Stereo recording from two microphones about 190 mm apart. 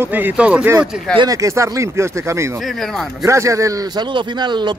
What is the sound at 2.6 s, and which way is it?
Speech, centre (ahead or behind).